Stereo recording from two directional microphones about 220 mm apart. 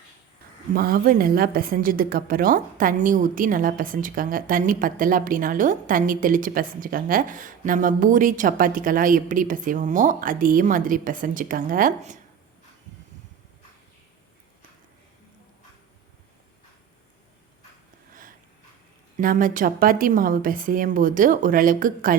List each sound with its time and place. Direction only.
0.7 s a woman's voice: 40° right (ahead or behind)
18.1 s a sound: 40° right (ahead or behind)
19.1 s a woman's voice: 40° right (ahead or behind)